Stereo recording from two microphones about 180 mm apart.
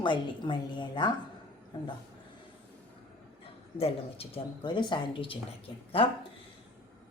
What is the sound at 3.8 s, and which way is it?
Speech, 35° left (ahead or behind).